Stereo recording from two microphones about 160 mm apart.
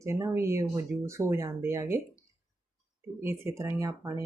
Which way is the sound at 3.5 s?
20° right (ahead or behind).